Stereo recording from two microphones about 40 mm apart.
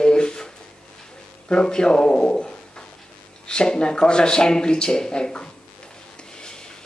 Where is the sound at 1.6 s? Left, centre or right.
Centre.